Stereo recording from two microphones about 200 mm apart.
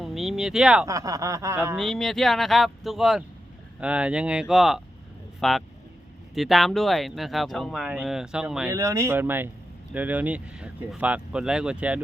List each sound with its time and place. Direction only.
0.0 s a sound: centre (ahead or behind)
0.9 s snicker: 15° right (ahead or behind)
1.7 s speech: centre (ahead or behind)
8.7 s snicker: 15° right (ahead or behind)
9.9 s speech: 10° right (ahead or behind)